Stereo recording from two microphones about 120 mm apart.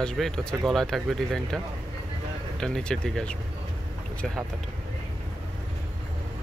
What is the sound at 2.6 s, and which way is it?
Speech, 5° left (ahead or behind).